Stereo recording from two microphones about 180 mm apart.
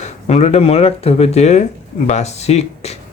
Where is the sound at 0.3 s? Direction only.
35° left (ahead or behind).